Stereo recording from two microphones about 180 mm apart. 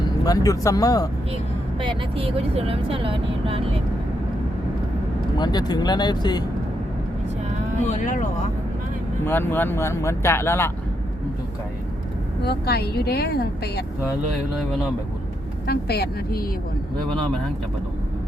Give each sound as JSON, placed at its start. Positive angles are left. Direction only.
{"t": 0.3, "sound": "speech", "side_deg": 20}
{"t": 1.8, "sound": "speech", "side_deg": -30}
{"t": 5.4, "sound": "speech", "side_deg": 25}
{"t": 7.9, "sound": "speech", "side_deg": 45}
{"t": 9.2, "sound": "speech", "side_deg": 10}
{"t": 12.5, "sound": "speech", "side_deg": 60}
{"t": 15.6, "sound": "speech", "side_deg": 60}